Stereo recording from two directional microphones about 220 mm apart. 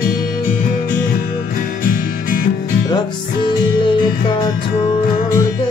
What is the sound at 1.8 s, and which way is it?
Music, 35° left (ahead or behind).